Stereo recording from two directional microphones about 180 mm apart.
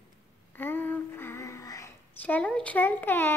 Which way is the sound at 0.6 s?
10° left (ahead or behind).